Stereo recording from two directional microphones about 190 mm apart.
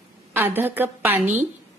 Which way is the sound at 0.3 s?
10° right (ahead or behind).